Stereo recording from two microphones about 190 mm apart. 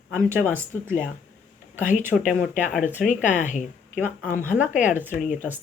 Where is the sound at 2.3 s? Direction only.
Centre (ahead or behind).